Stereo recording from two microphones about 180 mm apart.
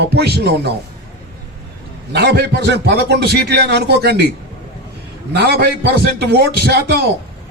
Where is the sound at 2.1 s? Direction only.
65° right (ahead or behind).